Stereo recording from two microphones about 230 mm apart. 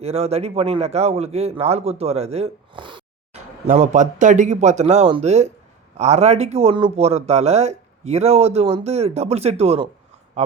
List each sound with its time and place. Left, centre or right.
0.0 s speech: right
3.7 s speech: right